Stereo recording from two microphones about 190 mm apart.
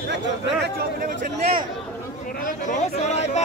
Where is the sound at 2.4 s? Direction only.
45° left (ahead or behind).